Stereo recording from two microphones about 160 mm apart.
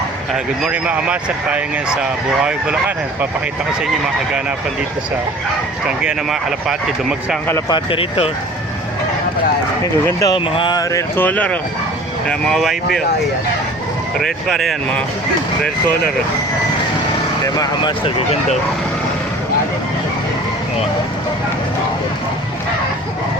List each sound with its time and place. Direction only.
0.6 s speech: 5° right (ahead or behind)
6.0 s speech: 5° right (ahead or behind)
7.7 s a sound: 35° left (ahead or behind)
10.1 s speech: 20° left (ahead or behind)
10.3 s a sound: 35° left (ahead or behind)
11.2 s speech: 10° left (ahead or behind)
14.2 s speech: centre (ahead or behind)
17.4 s speech: 25° left (ahead or behind)